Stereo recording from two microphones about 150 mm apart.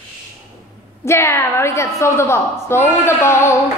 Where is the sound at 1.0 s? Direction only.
15° left (ahead or behind).